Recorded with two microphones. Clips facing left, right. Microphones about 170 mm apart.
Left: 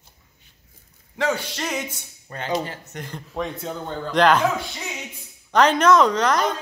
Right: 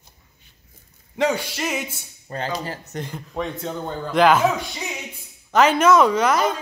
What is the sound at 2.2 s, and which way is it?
Speech, 35° right (ahead or behind).